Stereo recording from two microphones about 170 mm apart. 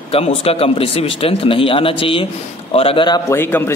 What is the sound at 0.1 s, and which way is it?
A man's voice, 35° left (ahead or behind).